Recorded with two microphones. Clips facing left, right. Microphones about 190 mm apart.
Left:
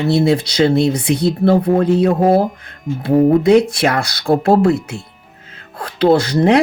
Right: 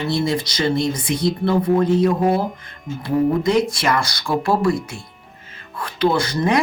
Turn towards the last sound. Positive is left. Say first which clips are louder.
# left 7 dB
turn(degrees=65)  # may be behind; listen again after turning